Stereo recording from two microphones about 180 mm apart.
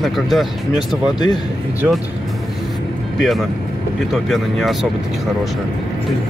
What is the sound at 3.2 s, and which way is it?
Speech, centre (ahead or behind).